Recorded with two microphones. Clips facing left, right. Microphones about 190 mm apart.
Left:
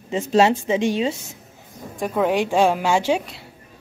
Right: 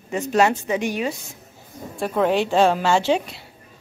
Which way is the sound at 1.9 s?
10° left (ahead or behind).